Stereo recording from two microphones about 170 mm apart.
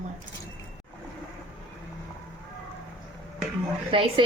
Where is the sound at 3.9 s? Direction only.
30° right (ahead or behind).